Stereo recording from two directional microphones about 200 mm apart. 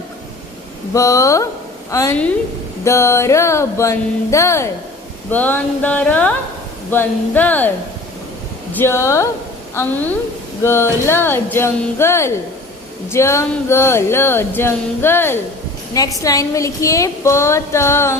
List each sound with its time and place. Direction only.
0.9 s speech: 15° left (ahead or behind)
8.7 s speech: 15° left (ahead or behind)